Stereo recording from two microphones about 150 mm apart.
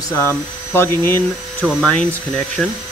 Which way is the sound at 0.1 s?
15° left (ahead or behind).